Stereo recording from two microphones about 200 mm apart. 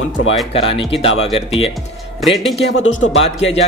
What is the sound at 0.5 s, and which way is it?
A man's voice, 30° left (ahead or behind).